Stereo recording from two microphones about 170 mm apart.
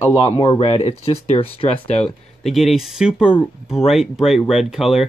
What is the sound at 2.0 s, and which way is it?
Speech, centre (ahead or behind).